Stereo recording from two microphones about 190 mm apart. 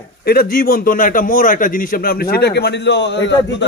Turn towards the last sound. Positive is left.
turn(degrees=70)  # may be behind; listen again after turning